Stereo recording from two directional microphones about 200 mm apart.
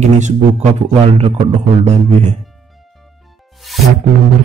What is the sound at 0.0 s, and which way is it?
Speech, 35° right (ahead or behind).